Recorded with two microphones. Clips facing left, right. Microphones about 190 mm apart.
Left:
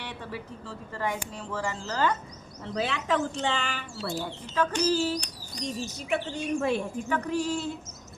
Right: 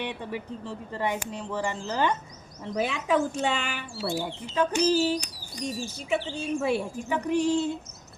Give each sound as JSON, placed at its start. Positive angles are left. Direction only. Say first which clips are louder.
{"t": 0.0, "sound": "speech", "louder": "right 5 dB", "side_deg": -20}